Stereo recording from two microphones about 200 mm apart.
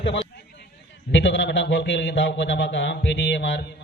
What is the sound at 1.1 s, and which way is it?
A man's voice, 65° left (ahead or behind).